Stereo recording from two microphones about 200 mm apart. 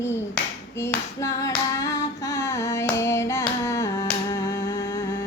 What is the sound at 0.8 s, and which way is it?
Clapping, 15° left (ahead or behind).